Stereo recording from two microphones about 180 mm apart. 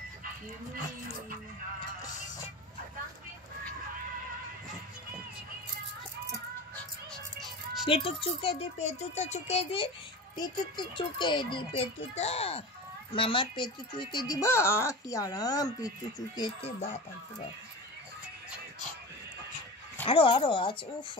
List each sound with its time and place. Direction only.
7.3 s music: centre (ahead or behind)
7.9 s speech: 30° left (ahead or behind)
16.8 s speech: 35° left (ahead or behind)
20.1 s speech: 30° left (ahead or behind)